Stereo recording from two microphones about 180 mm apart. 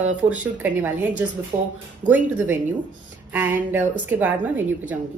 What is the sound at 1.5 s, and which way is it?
Speech, 35° right (ahead or behind).